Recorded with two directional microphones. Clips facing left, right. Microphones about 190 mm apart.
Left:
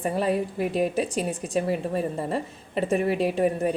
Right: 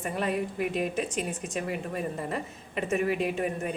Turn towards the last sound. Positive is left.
turn(degrees=35)  # may be behind; listen again after turning